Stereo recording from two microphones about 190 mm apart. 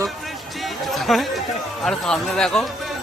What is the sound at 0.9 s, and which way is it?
Speech, centre (ahead or behind).